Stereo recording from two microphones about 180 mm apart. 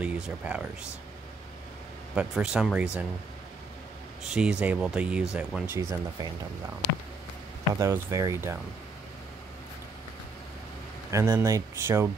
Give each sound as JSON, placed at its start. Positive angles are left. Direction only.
{"t": 0.0, "sound": "speech", "side_deg": -5}
{"t": 2.1, "sound": "speech", "side_deg": -5}
{"t": 4.3, "sound": "speech", "side_deg": -5}
{"t": 5.8, "sound": "speech", "side_deg": -20}
{"t": 7.8, "sound": "speech", "side_deg": -15}
{"t": 11.1, "sound": "speech", "side_deg": -15}